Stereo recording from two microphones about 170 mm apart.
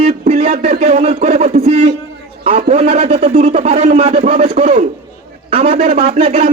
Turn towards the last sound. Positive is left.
turn(degrees=-40)  # may be behind; listen again after turning